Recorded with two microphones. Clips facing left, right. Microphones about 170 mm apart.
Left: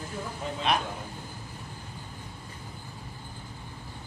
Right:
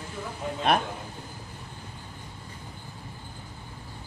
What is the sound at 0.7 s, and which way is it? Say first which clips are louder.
Speech: right 4 dB; 55° right (ahead or behind).